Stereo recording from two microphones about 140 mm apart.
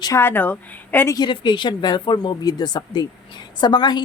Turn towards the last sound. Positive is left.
turn(degrees=30)  # may be behind; listen again after turning